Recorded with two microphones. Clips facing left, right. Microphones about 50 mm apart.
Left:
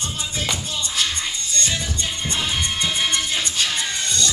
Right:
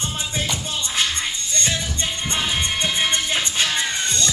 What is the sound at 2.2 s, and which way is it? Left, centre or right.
Music, right.